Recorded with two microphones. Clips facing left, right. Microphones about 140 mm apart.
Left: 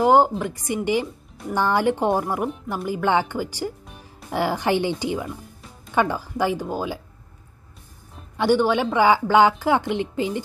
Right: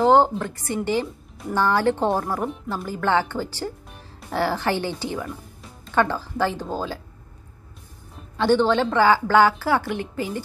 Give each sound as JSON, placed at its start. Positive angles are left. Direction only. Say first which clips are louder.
{"t": 0.0, "sound": "speech", "louder": "even", "side_deg": 10}
{"t": 8.4, "sound": "speech", "louder": "even", "side_deg": 10}